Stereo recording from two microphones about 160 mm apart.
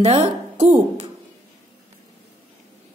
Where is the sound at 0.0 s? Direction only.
40° right (ahead or behind).